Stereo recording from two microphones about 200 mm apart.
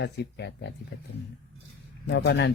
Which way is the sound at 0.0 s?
60° left (ahead or behind).